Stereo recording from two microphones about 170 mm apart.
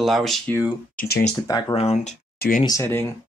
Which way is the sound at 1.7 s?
40° left (ahead or behind).